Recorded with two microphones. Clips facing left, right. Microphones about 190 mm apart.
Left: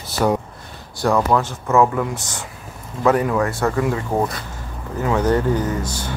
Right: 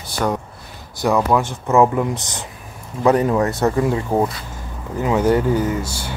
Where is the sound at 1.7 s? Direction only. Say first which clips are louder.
Right 2 dB; 20° right (ahead or behind).